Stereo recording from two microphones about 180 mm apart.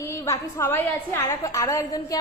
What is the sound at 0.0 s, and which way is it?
A woman's voice, 15° left (ahead or behind).